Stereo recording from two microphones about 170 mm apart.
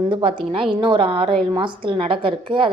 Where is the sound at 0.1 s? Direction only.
30° right (ahead or behind).